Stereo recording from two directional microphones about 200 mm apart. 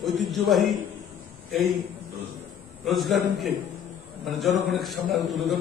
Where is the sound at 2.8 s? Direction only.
Centre (ahead or behind).